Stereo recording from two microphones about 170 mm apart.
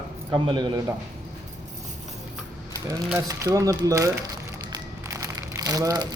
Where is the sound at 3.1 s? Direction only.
20° right (ahead or behind).